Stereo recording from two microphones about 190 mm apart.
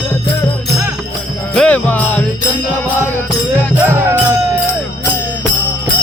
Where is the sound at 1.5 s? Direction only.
5° left (ahead or behind).